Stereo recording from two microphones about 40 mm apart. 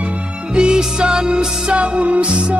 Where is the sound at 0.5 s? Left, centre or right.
Centre.